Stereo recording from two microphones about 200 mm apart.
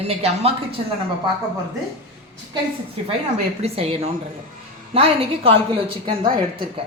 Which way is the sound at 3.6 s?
30° right (ahead or behind).